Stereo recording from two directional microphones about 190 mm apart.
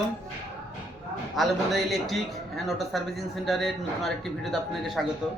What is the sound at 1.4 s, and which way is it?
A man's voice, centre (ahead or behind).